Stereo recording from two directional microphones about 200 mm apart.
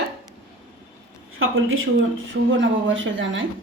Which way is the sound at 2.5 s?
70° right (ahead or behind).